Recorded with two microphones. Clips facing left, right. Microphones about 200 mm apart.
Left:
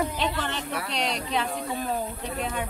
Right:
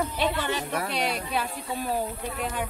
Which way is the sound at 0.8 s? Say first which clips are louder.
Left 1 dB; 50° right (ahead or behind).